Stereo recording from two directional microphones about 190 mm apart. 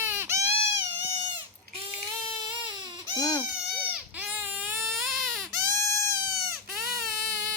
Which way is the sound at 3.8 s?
5° right (ahead or behind).